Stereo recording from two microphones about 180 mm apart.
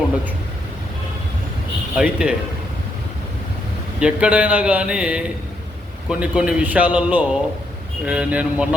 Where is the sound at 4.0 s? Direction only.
5° right (ahead or behind).